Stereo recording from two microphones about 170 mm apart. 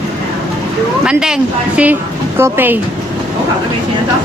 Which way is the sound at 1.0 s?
5° right (ahead or behind).